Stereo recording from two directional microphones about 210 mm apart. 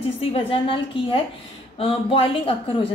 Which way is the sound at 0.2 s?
25° left (ahead or behind).